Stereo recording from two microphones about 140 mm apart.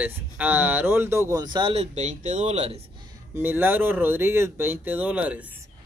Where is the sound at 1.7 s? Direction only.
55° right (ahead or behind).